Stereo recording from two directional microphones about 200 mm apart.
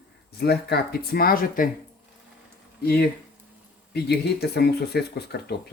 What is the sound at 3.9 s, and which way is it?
Speech, 55° left (ahead or behind).